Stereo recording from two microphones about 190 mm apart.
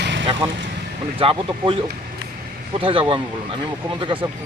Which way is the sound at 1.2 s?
25° right (ahead or behind).